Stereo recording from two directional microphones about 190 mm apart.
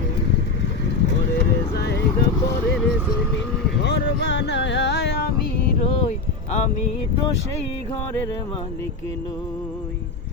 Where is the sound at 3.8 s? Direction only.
65° left (ahead or behind).